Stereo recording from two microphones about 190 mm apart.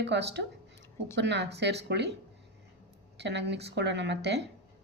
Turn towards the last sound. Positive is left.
turn(degrees=-65)  # may be behind; listen again after turning